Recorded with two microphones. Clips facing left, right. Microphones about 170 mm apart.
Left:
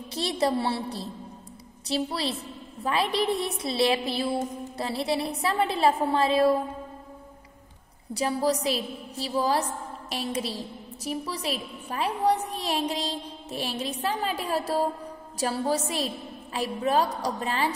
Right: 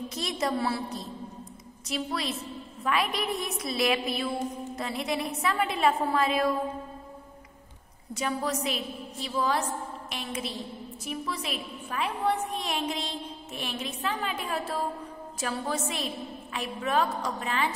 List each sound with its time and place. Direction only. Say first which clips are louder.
0.1 s a woman's voice: left 6 dB; 30° left (ahead or behind)
8.1 s a woman's voice: left 5 dB; 35° left (ahead or behind)